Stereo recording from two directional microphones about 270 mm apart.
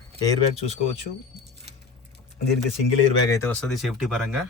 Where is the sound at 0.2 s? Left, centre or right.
Centre.